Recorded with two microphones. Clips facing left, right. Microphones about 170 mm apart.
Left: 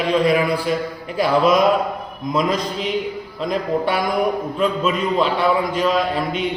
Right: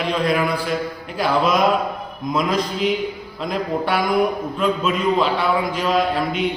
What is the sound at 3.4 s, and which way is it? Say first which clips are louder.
A man's voice: left 2 dB; centre (ahead or behind).